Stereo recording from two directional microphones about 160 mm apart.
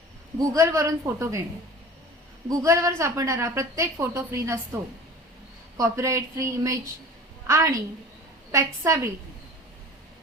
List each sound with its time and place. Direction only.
0.3 s a woman's voice: 20° right (ahead or behind)
2.5 s a woman's voice: 20° right (ahead or behind)